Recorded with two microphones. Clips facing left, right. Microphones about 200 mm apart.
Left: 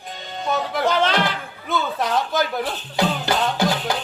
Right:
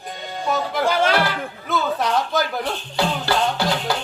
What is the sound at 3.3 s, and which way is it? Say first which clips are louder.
Music: right 1 dB; 20° left (ahead or behind).